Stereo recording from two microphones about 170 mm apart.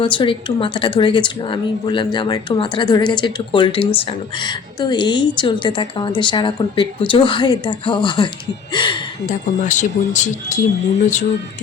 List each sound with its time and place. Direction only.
0.0 s speech: 30° left (ahead or behind)
9.2 s speech: 45° left (ahead or behind)